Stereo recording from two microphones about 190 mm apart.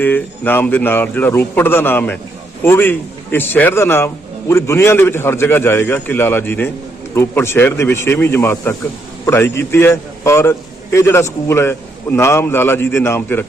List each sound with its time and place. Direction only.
0.0 s a man's voice: 10° left (ahead or behind)